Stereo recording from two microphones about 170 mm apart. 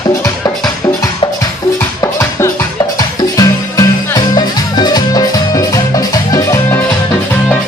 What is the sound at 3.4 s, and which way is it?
Music, 20° left (ahead or behind).